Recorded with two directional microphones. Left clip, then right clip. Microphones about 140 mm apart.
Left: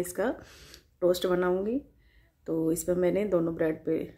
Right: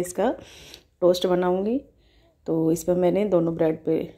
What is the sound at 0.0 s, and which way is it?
Speech, 15° right (ahead or behind).